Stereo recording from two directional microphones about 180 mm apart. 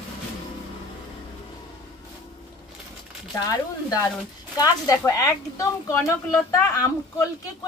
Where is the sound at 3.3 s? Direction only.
20° left (ahead or behind).